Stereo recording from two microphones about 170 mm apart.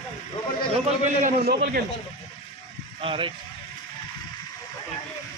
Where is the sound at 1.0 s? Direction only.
60° right (ahead or behind).